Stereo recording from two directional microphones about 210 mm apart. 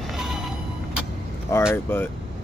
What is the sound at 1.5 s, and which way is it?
Vehicle, 15° left (ahead or behind).